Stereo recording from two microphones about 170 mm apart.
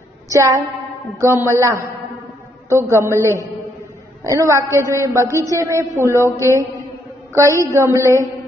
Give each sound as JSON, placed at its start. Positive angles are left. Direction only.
{"t": 0.3, "sound": "a woman's voice", "side_deg": -20}
{"t": 2.9, "sound": "a woman's voice", "side_deg": -15}
{"t": 4.2, "sound": "a woman's voice", "side_deg": -15}